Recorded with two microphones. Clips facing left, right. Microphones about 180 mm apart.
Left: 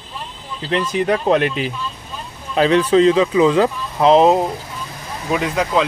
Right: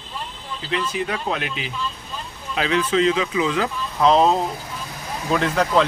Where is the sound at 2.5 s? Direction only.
35° left (ahead or behind).